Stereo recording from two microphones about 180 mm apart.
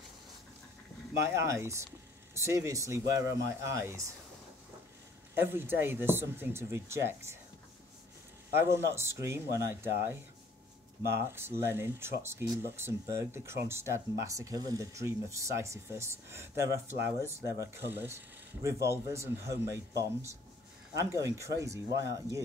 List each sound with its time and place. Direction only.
1.1 s speech: 15° right (ahead or behind)
5.3 s speech: 15° right (ahead or behind)
8.5 s speech: 15° right (ahead or behind)
11.3 s speech: 15° right (ahead or behind)